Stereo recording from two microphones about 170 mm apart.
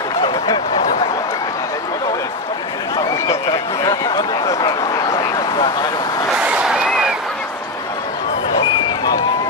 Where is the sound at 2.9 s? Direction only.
20° left (ahead or behind).